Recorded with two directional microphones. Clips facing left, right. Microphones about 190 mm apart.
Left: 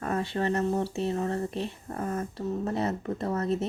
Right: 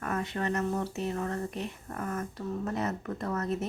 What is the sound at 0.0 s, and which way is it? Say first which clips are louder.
Speech: left 4 dB; 30° left (ahead or behind).